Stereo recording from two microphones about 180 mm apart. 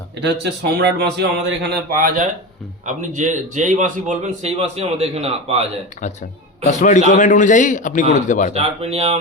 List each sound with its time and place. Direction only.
0.2 s a man's voice: 70° right (ahead or behind); by 5.6 s 35° right (ahead or behind)
6.7 s a man's voice: 45° left (ahead or behind)
8.5 s speech: 35° right (ahead or behind)